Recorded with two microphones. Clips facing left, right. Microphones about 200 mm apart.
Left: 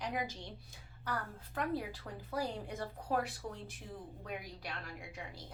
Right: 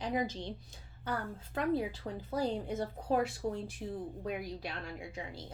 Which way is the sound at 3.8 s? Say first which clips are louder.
Right 10 dB; 40° right (ahead or behind).